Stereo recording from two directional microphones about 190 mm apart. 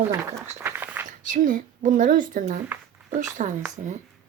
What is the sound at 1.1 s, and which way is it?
Speech, 40° right (ahead or behind).